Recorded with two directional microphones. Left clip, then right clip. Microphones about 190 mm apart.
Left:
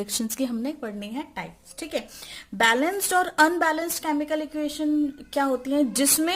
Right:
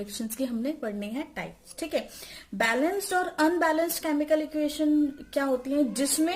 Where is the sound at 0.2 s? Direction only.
35° left (ahead or behind).